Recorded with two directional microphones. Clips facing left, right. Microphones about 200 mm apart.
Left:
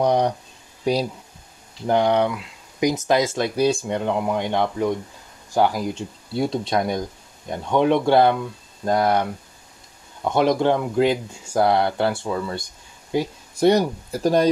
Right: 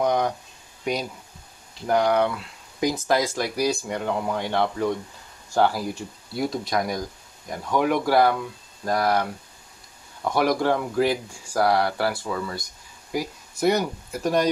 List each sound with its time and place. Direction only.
0.0 s speech: 30° left (ahead or behind)
1.9 s speech: 25° left (ahead or behind)